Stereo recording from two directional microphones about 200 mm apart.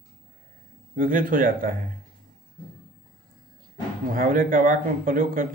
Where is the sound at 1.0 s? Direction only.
45° right (ahead or behind).